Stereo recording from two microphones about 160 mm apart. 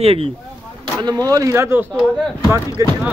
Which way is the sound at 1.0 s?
25° right (ahead or behind).